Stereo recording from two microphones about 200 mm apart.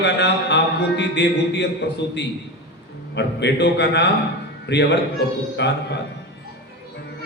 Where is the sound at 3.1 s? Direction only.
60° left (ahead or behind).